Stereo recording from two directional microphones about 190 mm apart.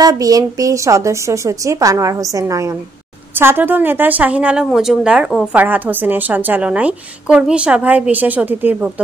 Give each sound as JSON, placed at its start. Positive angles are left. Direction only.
{"t": 0.0, "sound": "a woman's voice", "side_deg": -20}